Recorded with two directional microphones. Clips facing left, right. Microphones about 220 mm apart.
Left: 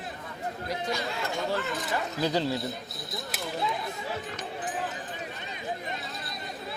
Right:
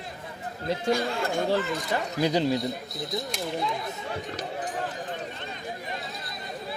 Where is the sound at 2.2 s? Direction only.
15° right (ahead or behind).